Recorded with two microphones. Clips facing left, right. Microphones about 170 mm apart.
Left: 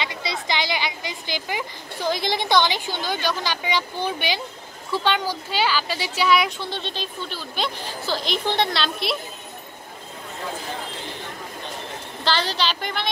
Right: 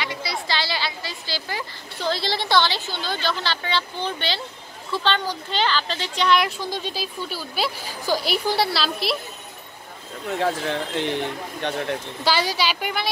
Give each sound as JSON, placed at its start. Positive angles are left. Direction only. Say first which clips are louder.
{"t": 0.0, "sound": "speech", "louder": "even", "side_deg": 20}
{"t": 6.6, "sound": "a woman's voice", "louder": "right 2 dB", "side_deg": -10}
{"t": 10.4, "sound": "speech", "louder": "right 7 dB", "side_deg": -75}
{"t": 12.3, "sound": "a woman's voice", "louder": "right 1 dB", "side_deg": -10}